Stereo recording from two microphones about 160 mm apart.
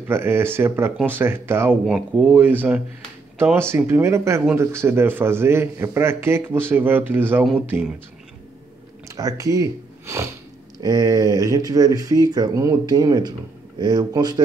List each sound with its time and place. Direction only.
0.1 s speech: 15° right (ahead or behind)
9.1 s speech: 20° right (ahead or behind)